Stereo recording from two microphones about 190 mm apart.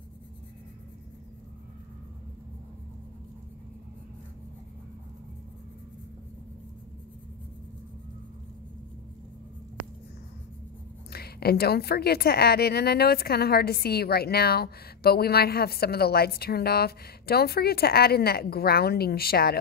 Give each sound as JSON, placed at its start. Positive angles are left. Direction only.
{"t": 11.1, "sound": "a woman's voice", "side_deg": 55}